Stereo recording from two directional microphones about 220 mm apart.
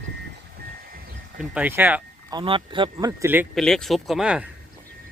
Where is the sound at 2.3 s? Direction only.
20° right (ahead or behind).